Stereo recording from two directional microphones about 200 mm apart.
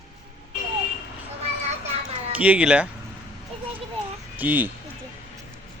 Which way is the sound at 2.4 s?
5° right (ahead or behind).